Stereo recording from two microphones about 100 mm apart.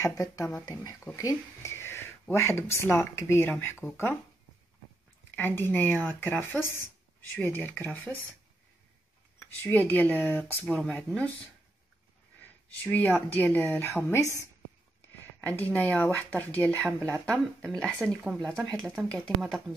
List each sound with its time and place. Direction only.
0.0 s speech: 35° left (ahead or behind)
5.3 s speech: 20° left (ahead or behind)
9.6 s speech: 20° left (ahead or behind)
12.8 s speech: 15° left (ahead or behind)
15.4 s speech: 15° left (ahead or behind)